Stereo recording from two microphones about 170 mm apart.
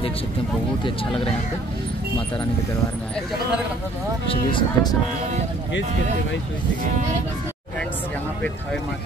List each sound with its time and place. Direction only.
0.8 s speech: 30° left (ahead or behind)
4.3 s speech: 30° left (ahead or behind)